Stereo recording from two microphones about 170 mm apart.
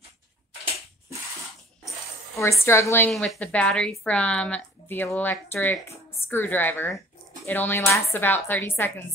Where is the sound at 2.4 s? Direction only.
15° left (ahead or behind).